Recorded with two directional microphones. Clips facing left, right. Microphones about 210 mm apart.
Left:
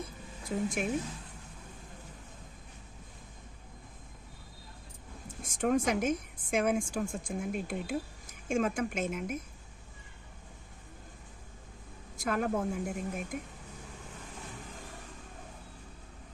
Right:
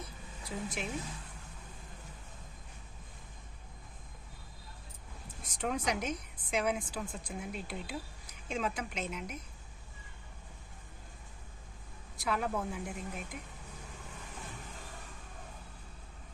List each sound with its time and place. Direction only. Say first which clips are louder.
0.4 s a woman's voice: left 7 dB; 50° left (ahead or behind)
5.4 s a woman's voice: left 7 dB; 50° left (ahead or behind)
12.1 s a woman's voice: left 3 dB; 45° left (ahead or behind)